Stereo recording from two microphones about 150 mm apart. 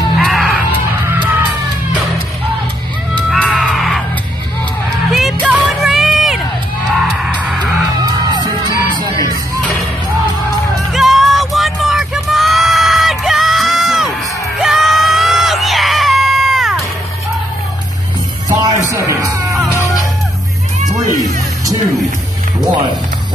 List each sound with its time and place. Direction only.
0.2 s music: centre (ahead or behind)
0.7 s music: 15° right (ahead or behind)
3.3 s music: centre (ahead or behind)
5.1 s run: 5° right (ahead or behind)
6.9 s music: 5° right (ahead or behind)
10.9 s music: centre (ahead or behind)
14.6 s screaming: centre (ahead or behind)
18.6 s music: 25° right (ahead or behind)